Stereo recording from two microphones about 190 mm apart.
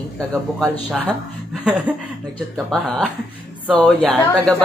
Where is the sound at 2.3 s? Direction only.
Centre (ahead or behind).